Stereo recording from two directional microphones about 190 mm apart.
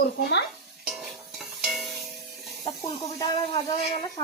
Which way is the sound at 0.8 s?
Centre (ahead or behind).